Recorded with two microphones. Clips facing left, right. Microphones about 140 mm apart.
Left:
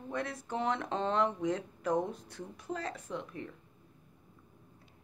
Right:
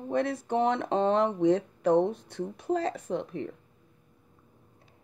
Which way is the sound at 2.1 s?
65° right (ahead or behind).